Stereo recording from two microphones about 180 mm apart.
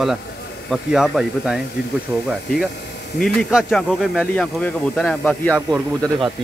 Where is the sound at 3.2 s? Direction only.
Centre (ahead or behind).